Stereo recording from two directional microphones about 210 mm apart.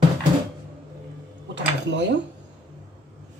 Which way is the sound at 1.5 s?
55° right (ahead or behind).